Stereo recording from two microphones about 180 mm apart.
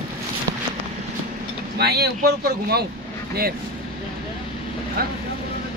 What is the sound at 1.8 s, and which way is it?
Speech, 65° right (ahead or behind).